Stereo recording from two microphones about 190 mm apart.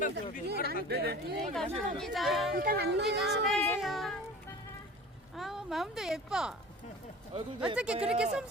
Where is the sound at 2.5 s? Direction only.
50° right (ahead or behind).